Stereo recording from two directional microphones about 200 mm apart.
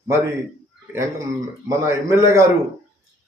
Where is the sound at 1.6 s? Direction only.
15° right (ahead or behind).